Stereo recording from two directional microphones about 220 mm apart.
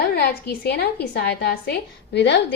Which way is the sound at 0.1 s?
45° left (ahead or behind).